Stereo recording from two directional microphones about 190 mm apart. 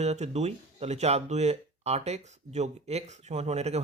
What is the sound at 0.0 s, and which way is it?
Speech, 35° right (ahead or behind).